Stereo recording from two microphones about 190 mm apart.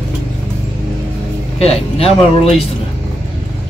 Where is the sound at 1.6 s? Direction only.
30° left (ahead or behind).